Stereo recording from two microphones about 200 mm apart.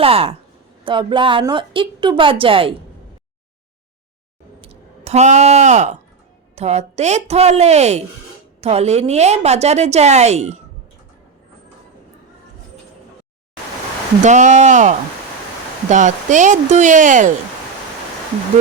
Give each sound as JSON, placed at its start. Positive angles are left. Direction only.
{"t": 0.0, "sound": "a woman's voice", "side_deg": -30}
{"t": 4.6, "sound": "a woman's voice", "side_deg": -30}
{"t": 14.2, "sound": "a woman's voice", "side_deg": -35}